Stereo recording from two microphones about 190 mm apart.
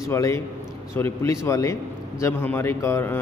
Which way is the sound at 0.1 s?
15° left (ahead or behind).